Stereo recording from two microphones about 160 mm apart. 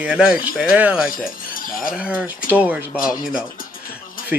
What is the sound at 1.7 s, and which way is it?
Speech, 60° left (ahead or behind).